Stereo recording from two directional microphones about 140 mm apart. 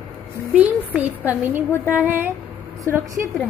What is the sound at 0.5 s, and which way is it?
A woman's voice, 10° right (ahead or behind).